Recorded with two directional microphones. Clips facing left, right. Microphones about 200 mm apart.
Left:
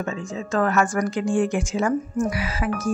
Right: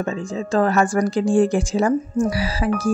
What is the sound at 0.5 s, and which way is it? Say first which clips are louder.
Speech: right 3 dB; 30° right (ahead or behind).